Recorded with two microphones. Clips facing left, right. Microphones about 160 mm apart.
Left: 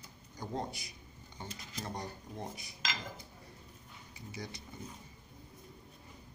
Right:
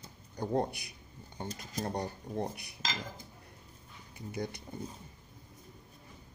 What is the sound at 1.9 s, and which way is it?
Speech, 60° right (ahead or behind).